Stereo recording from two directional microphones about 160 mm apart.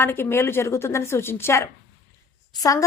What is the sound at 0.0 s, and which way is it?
A woman's voice, 15° left (ahead or behind).